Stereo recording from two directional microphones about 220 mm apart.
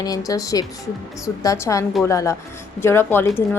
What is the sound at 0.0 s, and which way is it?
A woman's voice, 15° left (ahead or behind).